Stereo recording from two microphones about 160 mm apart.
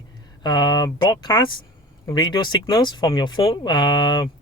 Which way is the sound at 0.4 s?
25° left (ahead or behind).